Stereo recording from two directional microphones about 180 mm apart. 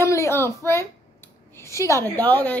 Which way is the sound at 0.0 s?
15° left (ahead or behind).